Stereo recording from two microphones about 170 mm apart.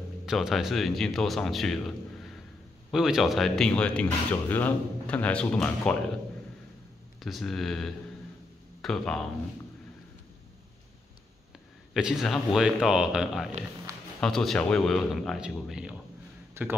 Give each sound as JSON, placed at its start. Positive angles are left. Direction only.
{"t": 0.3, "sound": "a man's voice", "side_deg": 0}
{"t": 7.2, "sound": "a man's voice", "side_deg": 0}
{"t": 11.9, "sound": "a man's voice", "side_deg": 0}
{"t": 13.9, "sound": "a sound", "side_deg": -15}
{"t": 14.2, "sound": "a man's voice", "side_deg": 0}